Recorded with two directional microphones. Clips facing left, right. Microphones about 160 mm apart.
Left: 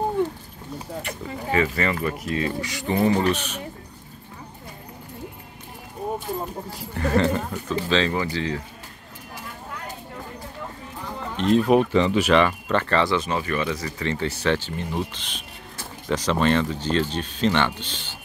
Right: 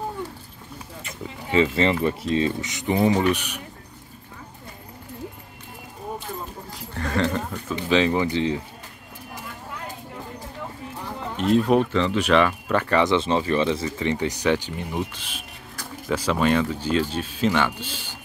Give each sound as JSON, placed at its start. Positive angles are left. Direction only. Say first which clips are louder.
{"t": 1.5, "sound": "speech", "louder": "right 3 dB", "side_deg": -25}
{"t": 6.9, "sound": "speech", "louder": "left 3 dB", "side_deg": 5}
{"t": 7.9, "sound": "speech", "louder": "right 4 dB", "side_deg": -15}
{"t": 11.3, "sound": "speech", "louder": "even", "side_deg": -5}
{"t": 11.7, "sound": "speech", "louder": "left 2 dB", "side_deg": 15}
{"t": 12.3, "sound": "speech", "louder": "even", "side_deg": 0}